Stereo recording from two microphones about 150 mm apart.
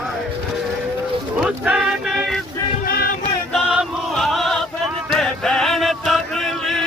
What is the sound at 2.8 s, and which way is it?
Music, 85° left.